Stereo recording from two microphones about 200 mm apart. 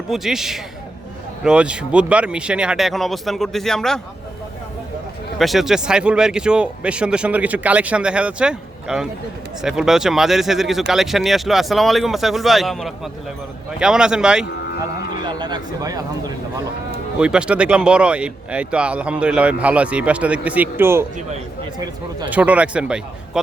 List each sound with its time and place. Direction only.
0.1 s speech: centre (ahead or behind)
5.4 s speech: centre (ahead or behind)
15.2 s speech: 20° right (ahead or behind)
17.2 s speech: 5° right (ahead or behind)
22.3 s speech: 5° right (ahead or behind)